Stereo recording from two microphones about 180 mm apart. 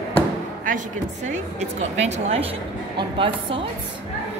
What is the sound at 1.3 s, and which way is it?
A woman's voice, 40° right (ahead or behind).